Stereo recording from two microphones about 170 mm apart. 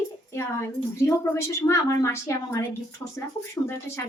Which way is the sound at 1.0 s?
15° left (ahead or behind).